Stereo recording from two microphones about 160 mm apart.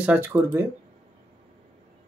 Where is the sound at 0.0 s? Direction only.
10° right (ahead or behind).